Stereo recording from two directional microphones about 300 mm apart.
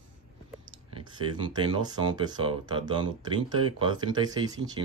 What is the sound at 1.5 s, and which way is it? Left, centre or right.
Speech, centre.